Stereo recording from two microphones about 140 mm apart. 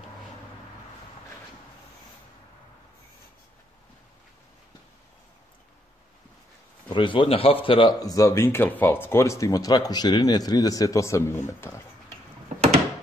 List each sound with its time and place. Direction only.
6.9 s speech: 35° left (ahead or behind)
8.0 s speech: 25° left (ahead or behind)